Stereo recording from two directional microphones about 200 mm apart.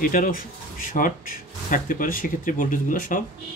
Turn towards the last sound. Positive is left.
turn(degrees=40)  # may be behind; listen again after turning